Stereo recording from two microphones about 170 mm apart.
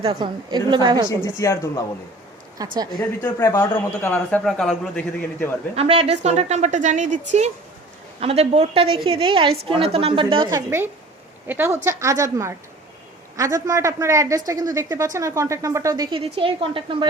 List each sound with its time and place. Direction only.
0.0 s a woman's voice: 30° right (ahead or behind)
1.4 s a man's voice: 20° left (ahead or behind)
2.6 s a woman's voice: 25° right (ahead or behind)
3.0 s a man's voice: 15° left (ahead or behind)
5.7 s a woman's voice: 35° right (ahead or behind)
11.4 s a woman's voice: 15° right (ahead or behind); by 17.1 s 30° right (ahead or behind)